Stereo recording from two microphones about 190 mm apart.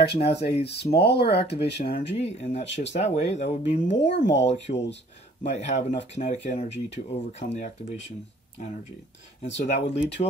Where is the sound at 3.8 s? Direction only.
70° left (ahead or behind).